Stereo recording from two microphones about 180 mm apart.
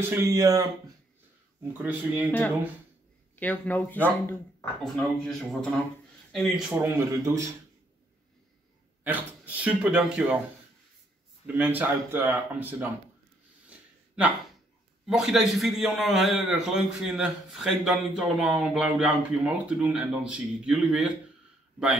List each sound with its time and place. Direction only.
0.1 s speech: 15° right (ahead or behind)
1.7 s speech: 10° right (ahead or behind)
3.3 s a man's voice: 10° left (ahead or behind)
6.8 s speech: 15° right (ahead or behind)
9.0 s speech: 10° right (ahead or behind)
11.4 s speech: 10° right (ahead or behind)
13.7 s a sound: 5° right (ahead or behind)
15.0 s a man's voice: centre (ahead or behind)